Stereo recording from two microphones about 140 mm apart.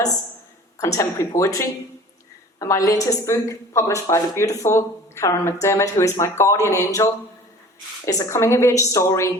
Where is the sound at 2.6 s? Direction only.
25° left (ahead or behind).